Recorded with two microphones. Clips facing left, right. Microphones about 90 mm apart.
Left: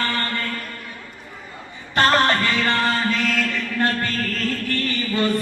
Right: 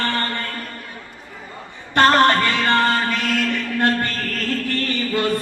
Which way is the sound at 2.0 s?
30° right (ahead or behind).